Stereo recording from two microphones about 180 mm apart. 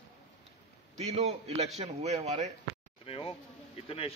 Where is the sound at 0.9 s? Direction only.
35° right (ahead or behind).